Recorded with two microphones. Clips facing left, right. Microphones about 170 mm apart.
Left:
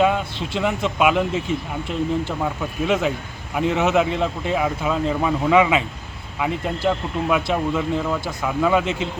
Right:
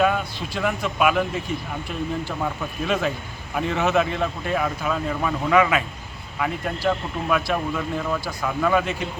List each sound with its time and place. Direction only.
0.0 s speech: 20° left (ahead or behind)
2.8 s speech: 15° left (ahead or behind)
8.8 s speech: 20° left (ahead or behind)